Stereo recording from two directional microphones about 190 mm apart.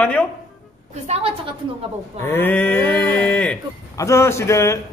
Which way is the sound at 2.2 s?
10° left (ahead or behind).